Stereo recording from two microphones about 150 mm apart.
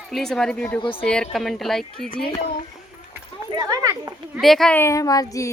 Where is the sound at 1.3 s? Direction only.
Centre (ahead or behind).